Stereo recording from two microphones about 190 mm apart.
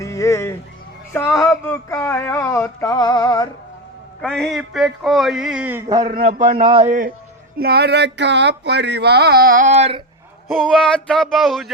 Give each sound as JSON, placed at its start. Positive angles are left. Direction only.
{"t": 0.0, "sound": "music", "side_deg": 15}
{"t": 4.2, "sound": "a man's voice", "side_deg": 0}
{"t": 6.2, "sound": "speech", "side_deg": -30}
{"t": 7.6, "sound": "a sound", "side_deg": -60}
{"t": 10.5, "sound": "a man's voice", "side_deg": 0}